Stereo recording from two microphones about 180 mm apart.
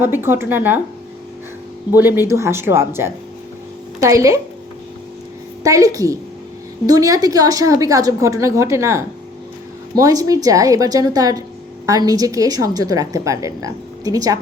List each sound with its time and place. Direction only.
0.0 s speech: 10° right (ahead or behind)
1.9 s speech: 10° right (ahead or behind)
5.6 s a woman's voice: 20° right (ahead or behind)